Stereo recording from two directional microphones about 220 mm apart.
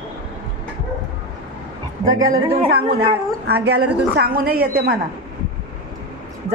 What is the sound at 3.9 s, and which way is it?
Speech, 45° right (ahead or behind).